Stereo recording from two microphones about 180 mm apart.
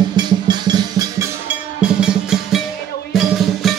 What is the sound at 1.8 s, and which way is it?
Drum, 5° right (ahead or behind).